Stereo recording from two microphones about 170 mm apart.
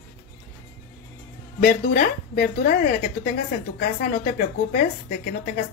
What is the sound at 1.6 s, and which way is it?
A woman's voice, 50° left (ahead or behind).